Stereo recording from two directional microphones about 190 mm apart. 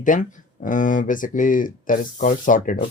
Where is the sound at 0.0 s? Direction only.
45° left (ahead or behind).